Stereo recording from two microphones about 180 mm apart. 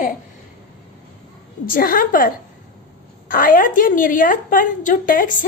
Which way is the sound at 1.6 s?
50° left (ahead or behind).